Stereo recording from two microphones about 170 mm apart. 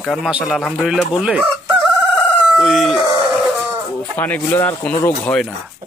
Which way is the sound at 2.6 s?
Centre (ahead or behind).